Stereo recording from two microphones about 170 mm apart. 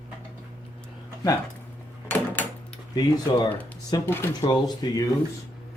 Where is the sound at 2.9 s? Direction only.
20° left (ahead or behind).